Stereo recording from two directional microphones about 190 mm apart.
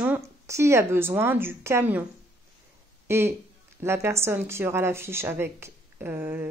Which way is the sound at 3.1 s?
15° right (ahead or behind).